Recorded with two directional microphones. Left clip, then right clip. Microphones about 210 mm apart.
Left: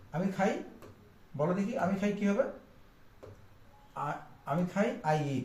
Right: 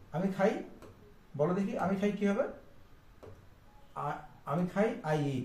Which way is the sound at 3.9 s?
15° right (ahead or behind).